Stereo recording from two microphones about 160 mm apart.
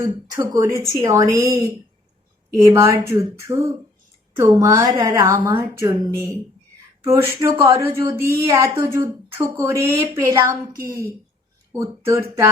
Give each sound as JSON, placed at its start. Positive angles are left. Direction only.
{"t": 0.0, "sound": "a woman's voice", "side_deg": -25}